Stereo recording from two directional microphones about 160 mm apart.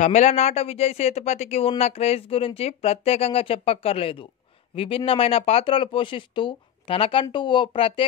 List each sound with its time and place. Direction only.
0.0 s speech: 45° left (ahead or behind)